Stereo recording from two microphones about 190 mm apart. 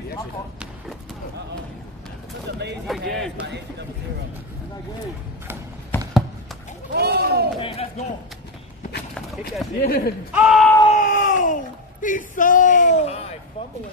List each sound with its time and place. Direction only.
3.1 s speech: centre (ahead or behind)
5.9 s a sound: 10° left (ahead or behind)
6.9 s speech: 55° right (ahead or behind)
7.6 s a man's voice: 35° left (ahead or behind)
9.8 s speech: 50° left (ahead or behind)
10.3 s speech: 5° right (ahead or behind)
10.9 s speech: 40° left (ahead or behind)